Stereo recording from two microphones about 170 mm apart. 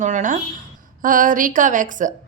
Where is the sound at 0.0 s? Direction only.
45° right (ahead or behind).